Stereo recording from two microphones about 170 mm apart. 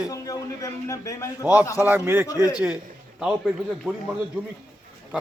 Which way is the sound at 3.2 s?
5° right (ahead or behind).